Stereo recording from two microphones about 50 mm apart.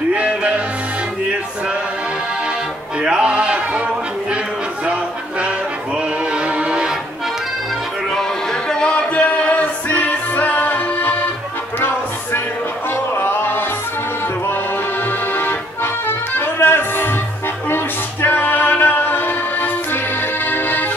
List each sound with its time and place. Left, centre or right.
0.1 s music: right
3.0 s music: centre
6.3 s music: right
8.1 s music: centre; by 11.2 s left
13.2 s music: left
15.3 s music: left